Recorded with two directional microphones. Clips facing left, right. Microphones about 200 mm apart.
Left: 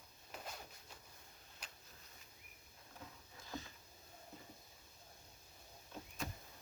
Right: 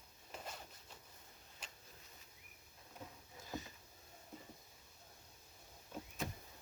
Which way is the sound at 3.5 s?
20° right (ahead or behind).